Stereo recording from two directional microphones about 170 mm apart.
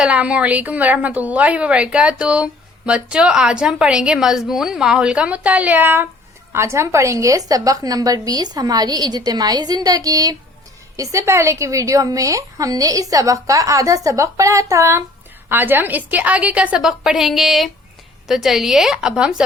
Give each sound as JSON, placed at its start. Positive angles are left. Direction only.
{"t": 0.0, "sound": "a woman's voice", "side_deg": -5}